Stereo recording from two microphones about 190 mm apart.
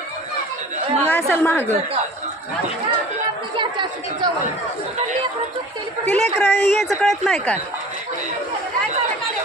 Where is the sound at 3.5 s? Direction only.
25° right (ahead or behind).